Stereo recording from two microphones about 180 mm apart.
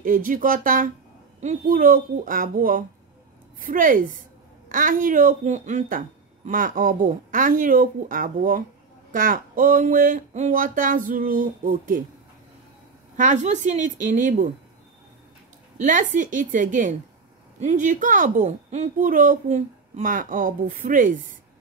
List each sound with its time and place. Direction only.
0.0 s a woman's voice: 50° right (ahead or behind)
13.1 s speech: 45° right (ahead or behind)
15.8 s speech: 45° right (ahead or behind)